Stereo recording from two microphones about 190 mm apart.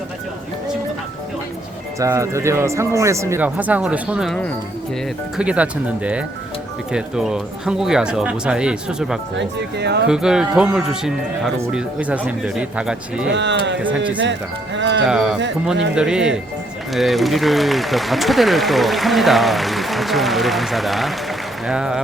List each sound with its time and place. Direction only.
2.0 s speech: 15° right (ahead or behind)
9.4 s speech: 60° right (ahead or behind)
10.1 s speech: 5° right (ahead or behind)
13.3 s speech: 70° right (ahead or behind)
14.8 s speech: 70° right (ahead or behind)
15.0 s speech: 5° right (ahead or behind)